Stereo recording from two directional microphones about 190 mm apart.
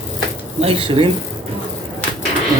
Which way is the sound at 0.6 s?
30° right (ahead or behind).